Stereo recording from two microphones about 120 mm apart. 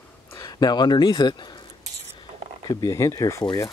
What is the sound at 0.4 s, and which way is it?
Speech, 35° left (ahead or behind).